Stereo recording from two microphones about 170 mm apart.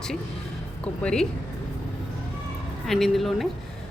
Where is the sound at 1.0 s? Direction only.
5° left (ahead or behind).